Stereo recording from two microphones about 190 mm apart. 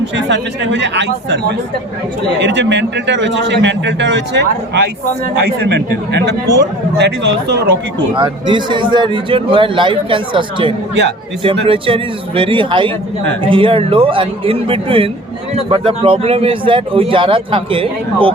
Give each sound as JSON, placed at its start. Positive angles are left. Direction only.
{"t": 0.3, "sound": "a man's voice", "side_deg": -70}
{"t": 2.4, "sound": "a man's voice", "side_deg": -70}
{"t": 8.1, "sound": "a man's voice", "side_deg": -25}